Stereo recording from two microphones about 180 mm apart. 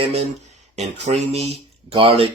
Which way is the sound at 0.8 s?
40° right (ahead or behind).